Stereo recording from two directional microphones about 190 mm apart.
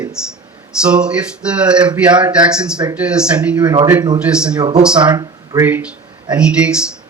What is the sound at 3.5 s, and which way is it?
Speech, 20° right (ahead or behind).